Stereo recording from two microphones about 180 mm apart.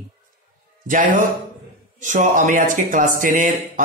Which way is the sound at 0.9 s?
45° right (ahead or behind).